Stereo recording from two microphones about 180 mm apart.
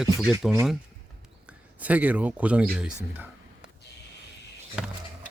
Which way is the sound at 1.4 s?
10° right (ahead or behind).